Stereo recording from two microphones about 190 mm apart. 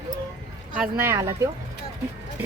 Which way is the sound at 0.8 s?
10° right (ahead or behind).